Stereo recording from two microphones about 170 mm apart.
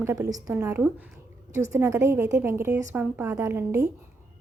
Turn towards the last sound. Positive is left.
turn(degrees=-15)  # may be behind; listen again after turning